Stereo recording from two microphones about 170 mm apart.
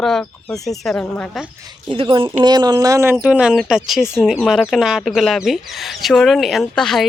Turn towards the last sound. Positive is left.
turn(degrees=0)  # may be behind; listen again after turning